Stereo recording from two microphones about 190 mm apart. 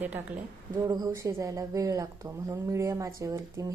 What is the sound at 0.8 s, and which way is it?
A woman's voice, 20° right (ahead or behind).